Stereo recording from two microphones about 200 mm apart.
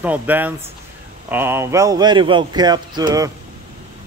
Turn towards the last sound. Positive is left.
turn(degrees=-20)  # may be behind; listen again after turning